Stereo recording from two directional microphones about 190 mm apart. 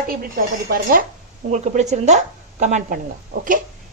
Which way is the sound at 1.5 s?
40° right (ahead or behind).